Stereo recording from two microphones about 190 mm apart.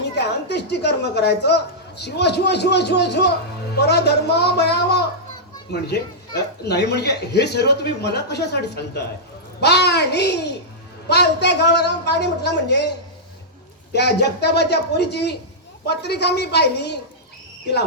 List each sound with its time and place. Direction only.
0.0 s a woman's voice: 65° left (ahead or behind)
6.7 s a woman's voice: 60° left (ahead or behind)
13.9 s a woman's voice: 60° left (ahead or behind)